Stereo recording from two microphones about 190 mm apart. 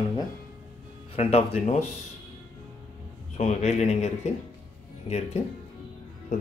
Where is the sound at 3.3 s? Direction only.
35° left (ahead or behind).